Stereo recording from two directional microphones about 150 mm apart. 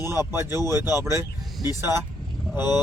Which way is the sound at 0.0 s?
15° right (ahead or behind).